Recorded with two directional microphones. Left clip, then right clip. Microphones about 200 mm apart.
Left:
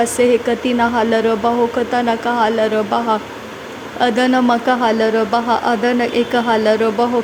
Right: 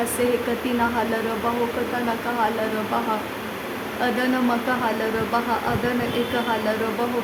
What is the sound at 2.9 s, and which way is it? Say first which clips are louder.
A man's voice: left 7 dB; 35° left (ahead or behind).